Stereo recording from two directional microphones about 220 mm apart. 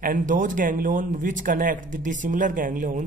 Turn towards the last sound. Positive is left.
turn(degrees=-35)  # may be behind; listen again after turning